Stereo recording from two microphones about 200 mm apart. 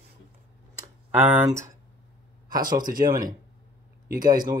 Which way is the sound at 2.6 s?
45° right (ahead or behind).